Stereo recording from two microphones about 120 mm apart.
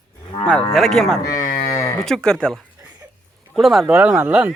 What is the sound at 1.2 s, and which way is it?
Cattle, 30° left (ahead or behind).